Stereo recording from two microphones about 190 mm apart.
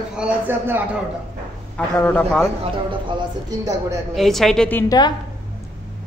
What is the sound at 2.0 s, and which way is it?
Speech, 10° left (ahead or behind).